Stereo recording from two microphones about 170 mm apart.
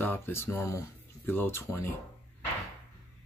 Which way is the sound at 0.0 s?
15° left (ahead or behind).